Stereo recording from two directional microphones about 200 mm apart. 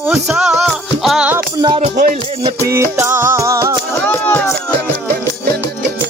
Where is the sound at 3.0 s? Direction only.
10° right (ahead or behind).